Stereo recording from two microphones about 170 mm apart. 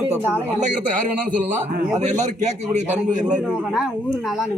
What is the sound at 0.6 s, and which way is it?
A man's voice, 50° right (ahead or behind).